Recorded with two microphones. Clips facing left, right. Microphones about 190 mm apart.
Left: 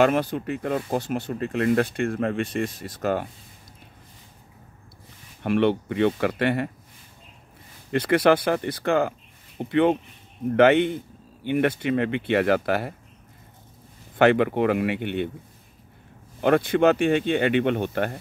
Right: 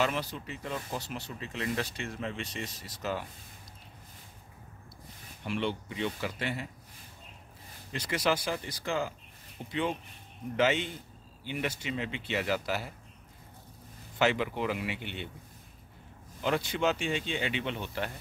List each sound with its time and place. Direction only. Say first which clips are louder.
0.0 s speech: left 11 dB; 55° left (ahead or behind)
5.4 s speech: left 12 dB; 60° left (ahead or behind)
7.9 s speech: left 11 dB; 60° left (ahead or behind)
14.1 s speech: left 10 dB; 55° left (ahead or behind)
16.3 s speech: left 11 dB; 60° left (ahead or behind)